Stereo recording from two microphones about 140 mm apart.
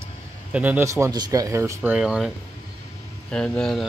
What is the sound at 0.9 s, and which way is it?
Speech, 25° right (ahead or behind).